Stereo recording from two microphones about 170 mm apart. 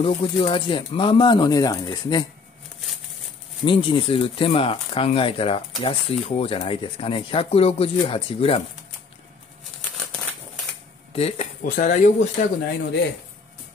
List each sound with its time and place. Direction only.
0.0 s speech: 30° left (ahead or behind)
3.6 s speech: 30° left (ahead or behind)
11.1 s speech: 35° left (ahead or behind)
11.6 s speech: 50° left (ahead or behind)